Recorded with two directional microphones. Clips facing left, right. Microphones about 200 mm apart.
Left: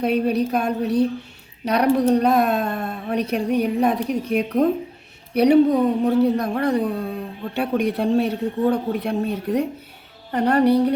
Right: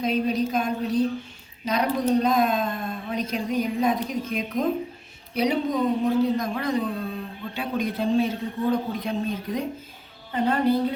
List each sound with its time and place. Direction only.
0.0 s speech: 65° left (ahead or behind)